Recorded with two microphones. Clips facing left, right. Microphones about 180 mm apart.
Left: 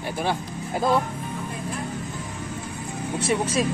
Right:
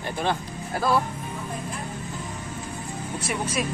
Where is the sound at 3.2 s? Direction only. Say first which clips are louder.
Left 5 dB; 30° left (ahead or behind).